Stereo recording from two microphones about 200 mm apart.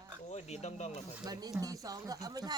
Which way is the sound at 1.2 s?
20° right (ahead or behind).